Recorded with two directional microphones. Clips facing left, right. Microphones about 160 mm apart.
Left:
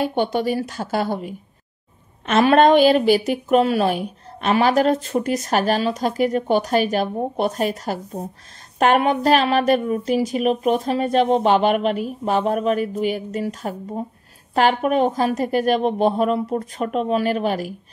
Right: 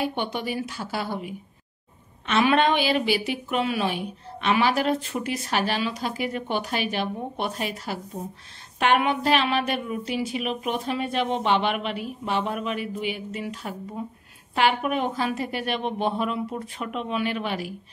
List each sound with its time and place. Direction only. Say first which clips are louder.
0.0 s a woman's voice: left 7 dB; 40° left (ahead or behind)